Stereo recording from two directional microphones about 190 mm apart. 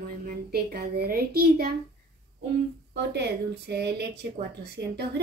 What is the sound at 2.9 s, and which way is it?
Speech, 65° right (ahead or behind).